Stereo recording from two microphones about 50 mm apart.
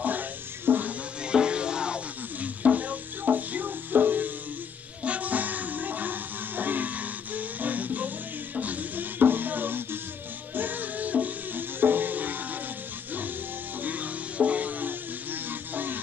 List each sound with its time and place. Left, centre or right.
0.0 s music: right
1.2 s music: centre
2.4 s music: right
13.7 s music: right